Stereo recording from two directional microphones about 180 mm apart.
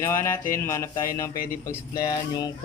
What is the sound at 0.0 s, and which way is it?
A man's voice, 15° left (ahead or behind).